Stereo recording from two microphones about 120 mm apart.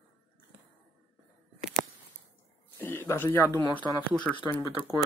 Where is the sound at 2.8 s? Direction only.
20° left (ahead or behind).